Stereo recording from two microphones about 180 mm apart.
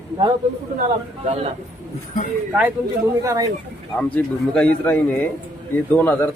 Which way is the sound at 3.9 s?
5° left (ahead or behind).